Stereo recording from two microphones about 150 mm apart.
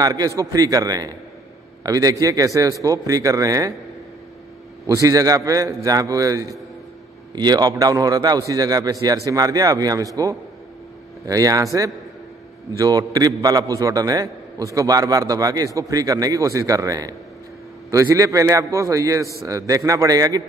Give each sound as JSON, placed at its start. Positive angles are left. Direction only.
{"t": 0.0, "sound": "a man's voice", "side_deg": -25}
{"t": 4.8, "sound": "a man's voice", "side_deg": -20}